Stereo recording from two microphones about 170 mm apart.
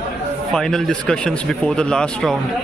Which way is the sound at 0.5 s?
5° left (ahead or behind).